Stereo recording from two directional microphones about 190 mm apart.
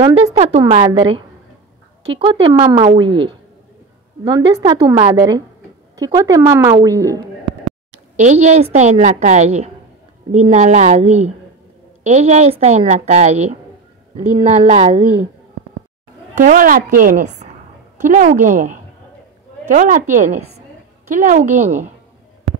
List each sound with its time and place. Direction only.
0.0 s a woman's voice: 30° right (ahead or behind)
8.2 s a woman's voice: 40° right (ahead or behind)
16.3 s a woman's voice: 45° right (ahead or behind)